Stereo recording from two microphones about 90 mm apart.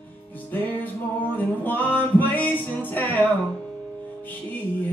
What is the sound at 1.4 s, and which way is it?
Music, 20° left (ahead or behind).